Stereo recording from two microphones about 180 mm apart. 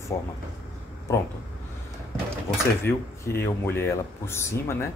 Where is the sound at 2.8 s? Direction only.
15° left (ahead or behind).